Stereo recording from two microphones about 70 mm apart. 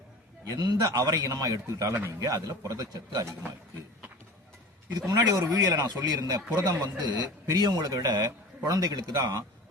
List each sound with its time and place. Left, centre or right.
0.4 s a man's voice: right
2.2 s a man's voice: right
4.9 s a man's voice: right